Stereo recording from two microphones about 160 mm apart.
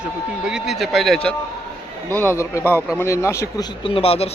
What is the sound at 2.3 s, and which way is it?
A man's voice, 20° left (ahead or behind).